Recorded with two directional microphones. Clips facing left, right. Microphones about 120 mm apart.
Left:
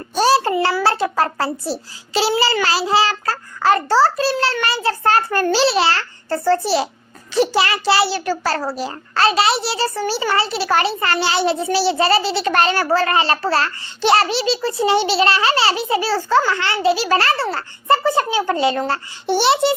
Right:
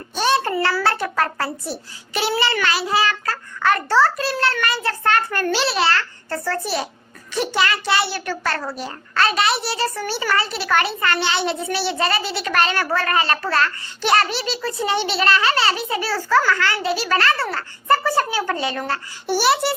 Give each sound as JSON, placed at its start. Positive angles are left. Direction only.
{"t": 0.2, "sound": "child singing", "side_deg": 35}
{"t": 0.6, "sound": "a child's voice", "side_deg": 25}